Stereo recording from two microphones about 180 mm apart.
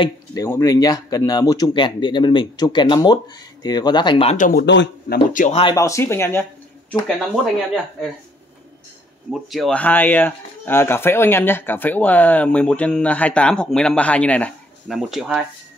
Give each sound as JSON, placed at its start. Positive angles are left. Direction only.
{"t": 0.0, "sound": "speech", "side_deg": 20}
{"t": 4.4, "sound": "speech", "side_deg": 50}
{"t": 4.6, "sound": "speech", "side_deg": 75}
{"t": 5.3, "sound": "speech", "side_deg": 45}
{"t": 5.6, "sound": "speech", "side_deg": 25}
{"t": 9.3, "sound": "speech", "side_deg": 0}